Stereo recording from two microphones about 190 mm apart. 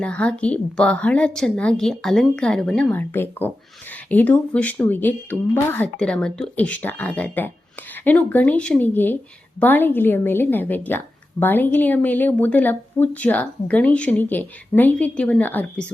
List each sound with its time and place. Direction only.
0.0 s a woman's voice: 5° left (ahead or behind)